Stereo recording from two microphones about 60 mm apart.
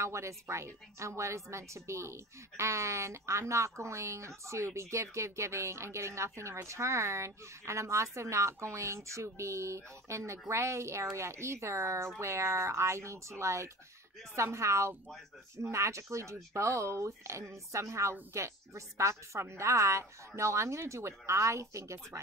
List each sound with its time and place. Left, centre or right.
0.0 s a woman's voice: right